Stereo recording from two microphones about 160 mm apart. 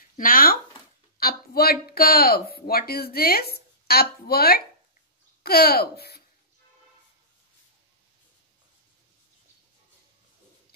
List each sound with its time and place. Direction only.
0.2 s speech: 60° left (ahead or behind); by 6.2 s 80° left